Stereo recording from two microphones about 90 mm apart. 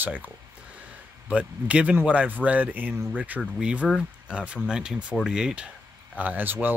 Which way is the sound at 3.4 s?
5° right (ahead or behind).